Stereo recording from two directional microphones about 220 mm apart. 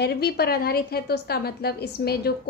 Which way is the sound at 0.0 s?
45° left (ahead or behind).